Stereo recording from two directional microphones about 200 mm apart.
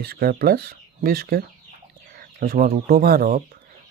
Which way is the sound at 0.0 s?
50° right (ahead or behind).